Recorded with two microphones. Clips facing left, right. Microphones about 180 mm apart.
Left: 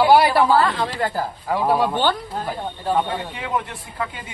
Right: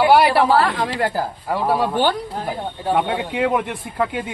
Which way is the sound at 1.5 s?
Centre (ahead or behind).